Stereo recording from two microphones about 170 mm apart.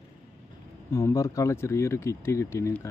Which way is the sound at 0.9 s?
20° left (ahead or behind).